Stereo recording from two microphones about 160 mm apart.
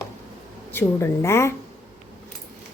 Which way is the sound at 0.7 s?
15° left (ahead or behind).